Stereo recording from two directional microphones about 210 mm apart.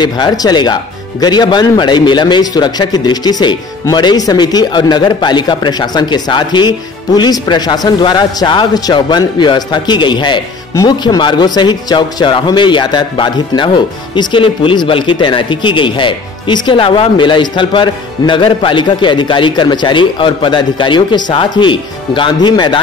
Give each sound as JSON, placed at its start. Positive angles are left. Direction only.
{"t": 0.0, "sound": "a man's voice", "side_deg": 20}